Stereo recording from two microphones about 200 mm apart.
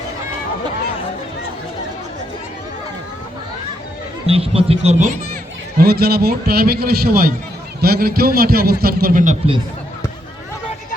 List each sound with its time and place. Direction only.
4.3 s speech: 30° right (ahead or behind)
5.7 s a man's voice: 50° right (ahead or behind)